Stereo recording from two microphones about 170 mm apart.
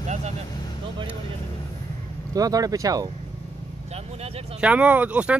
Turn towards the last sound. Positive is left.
turn(degrees=-10)  # may be behind; listen again after turning